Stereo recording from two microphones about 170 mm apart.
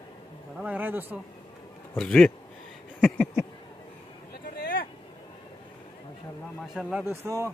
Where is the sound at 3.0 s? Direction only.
10° left (ahead or behind).